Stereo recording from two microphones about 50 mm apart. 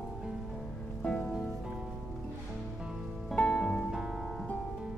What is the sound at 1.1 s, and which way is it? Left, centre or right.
Music, centre.